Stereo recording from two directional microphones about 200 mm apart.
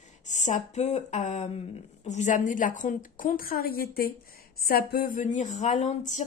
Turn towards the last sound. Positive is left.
turn(degrees=35)  # may be behind; listen again after turning